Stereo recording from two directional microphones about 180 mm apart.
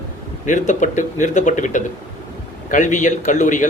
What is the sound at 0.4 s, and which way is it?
Speech, 45° left (ahead or behind).